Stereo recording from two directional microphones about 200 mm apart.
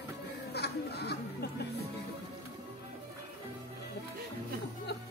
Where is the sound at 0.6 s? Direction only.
55° left (ahead or behind).